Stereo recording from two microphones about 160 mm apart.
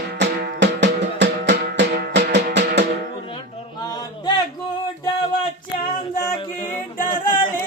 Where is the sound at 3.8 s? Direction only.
25° left (ahead or behind).